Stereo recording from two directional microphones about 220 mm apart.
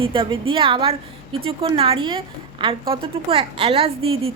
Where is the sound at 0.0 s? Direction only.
25° right (ahead or behind).